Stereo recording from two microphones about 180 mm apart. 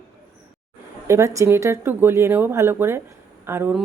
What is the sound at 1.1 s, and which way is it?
Speech, 15° right (ahead or behind).